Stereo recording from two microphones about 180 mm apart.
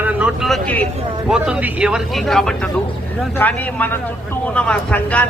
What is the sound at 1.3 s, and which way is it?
Speech, 5° right (ahead or behind).